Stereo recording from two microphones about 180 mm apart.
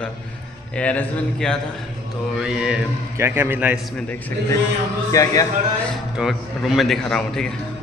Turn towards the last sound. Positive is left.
turn(degrees=5)  # may be behind; listen again after turning